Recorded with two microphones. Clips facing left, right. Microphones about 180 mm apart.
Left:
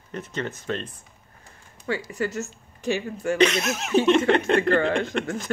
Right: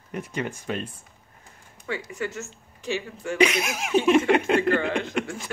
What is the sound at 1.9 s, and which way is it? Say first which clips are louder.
A woman's voice: left 3 dB; 35° left (ahead or behind).